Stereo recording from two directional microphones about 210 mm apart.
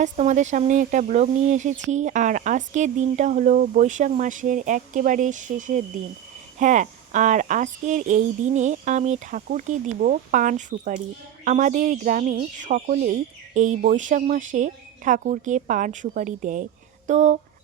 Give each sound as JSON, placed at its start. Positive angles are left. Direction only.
{"t": 0.0, "sound": "speech", "side_deg": -35}